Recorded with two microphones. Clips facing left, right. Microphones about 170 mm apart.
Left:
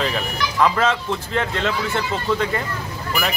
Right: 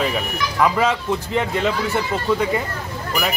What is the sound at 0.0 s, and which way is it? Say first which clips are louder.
Speech: right 1 dB; 10° right (ahead or behind).